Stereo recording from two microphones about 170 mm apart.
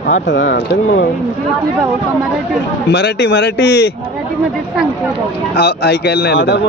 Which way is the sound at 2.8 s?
80° left.